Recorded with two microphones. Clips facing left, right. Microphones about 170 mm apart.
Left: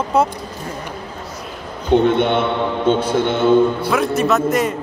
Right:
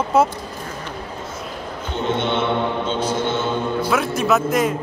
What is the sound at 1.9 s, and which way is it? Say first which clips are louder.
A man's voice: left 8 dB; 60° left (ahead or behind).